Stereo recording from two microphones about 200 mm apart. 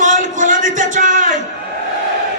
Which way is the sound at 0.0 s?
40° right (ahead or behind).